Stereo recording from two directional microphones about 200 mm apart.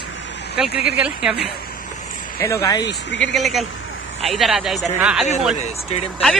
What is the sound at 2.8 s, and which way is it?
Speech, 65° left (ahead or behind).